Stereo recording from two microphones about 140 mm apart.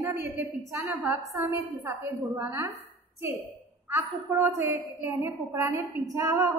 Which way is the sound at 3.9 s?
20° right (ahead or behind).